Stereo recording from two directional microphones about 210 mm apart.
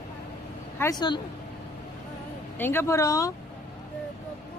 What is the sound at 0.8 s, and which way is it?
Speech, 20° left (ahead or behind).